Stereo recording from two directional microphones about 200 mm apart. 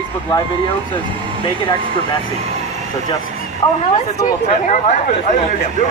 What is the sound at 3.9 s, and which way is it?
Speech, 35° left (ahead or behind).